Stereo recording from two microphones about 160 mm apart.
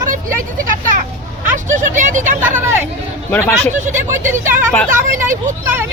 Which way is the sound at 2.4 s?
15° right (ahead or behind).